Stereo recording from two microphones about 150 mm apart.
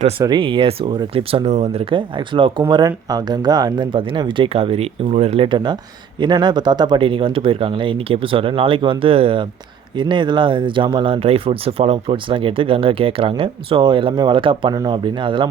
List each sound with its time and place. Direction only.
0.3 s speech: 35° right (ahead or behind)